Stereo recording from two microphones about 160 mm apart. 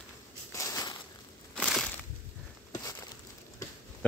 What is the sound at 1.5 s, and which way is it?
Crushing, 5° left (ahead or behind).